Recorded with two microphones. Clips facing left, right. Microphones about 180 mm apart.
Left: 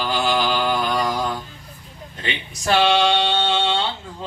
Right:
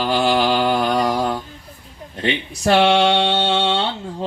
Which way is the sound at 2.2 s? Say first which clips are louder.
Right 7 dB; 60° right (ahead or behind).